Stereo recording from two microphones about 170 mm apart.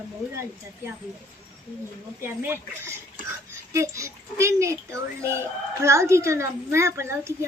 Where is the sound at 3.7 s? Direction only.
15° right (ahead or behind).